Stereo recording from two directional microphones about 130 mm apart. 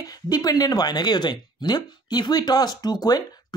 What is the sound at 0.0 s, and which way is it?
Speech, 30° left (ahead or behind).